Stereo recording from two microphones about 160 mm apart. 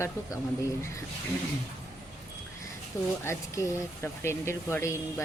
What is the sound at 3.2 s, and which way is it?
Speech, 20° left (ahead or behind).